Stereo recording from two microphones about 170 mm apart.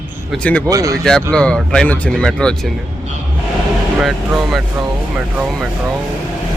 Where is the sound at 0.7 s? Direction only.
20° right (ahead or behind).